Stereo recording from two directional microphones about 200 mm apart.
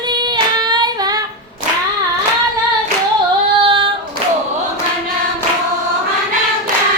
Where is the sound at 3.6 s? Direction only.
25° right (ahead or behind).